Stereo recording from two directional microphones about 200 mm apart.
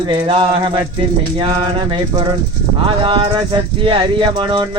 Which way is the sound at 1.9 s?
20° right (ahead or behind).